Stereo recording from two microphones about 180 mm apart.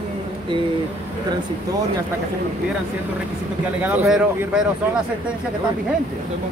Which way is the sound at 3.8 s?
10° right (ahead or behind).